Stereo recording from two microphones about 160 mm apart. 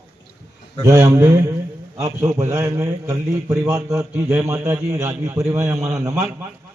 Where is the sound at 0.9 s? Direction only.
20° right (ahead or behind).